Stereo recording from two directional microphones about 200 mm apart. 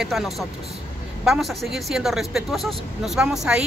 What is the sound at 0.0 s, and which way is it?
A woman's voice, centre (ahead or behind).